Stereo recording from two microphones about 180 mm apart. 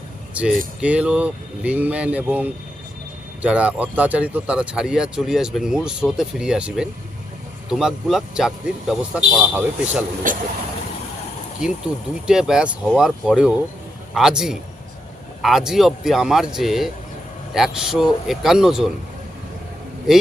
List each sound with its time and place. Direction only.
0.4 s speech: 5° right (ahead or behind)
10.3 s vehicle: 50° right (ahead or behind)
12.2 s speech: 5° right (ahead or behind)
20.1 s speech: 5° right (ahead or behind)